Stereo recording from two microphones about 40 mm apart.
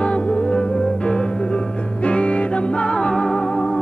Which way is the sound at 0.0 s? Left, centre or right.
Left.